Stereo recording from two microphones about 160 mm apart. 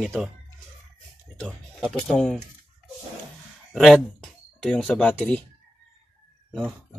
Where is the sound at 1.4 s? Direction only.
5° left (ahead or behind).